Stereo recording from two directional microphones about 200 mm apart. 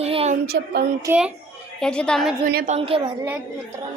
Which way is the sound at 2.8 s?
25° right (ahead or behind).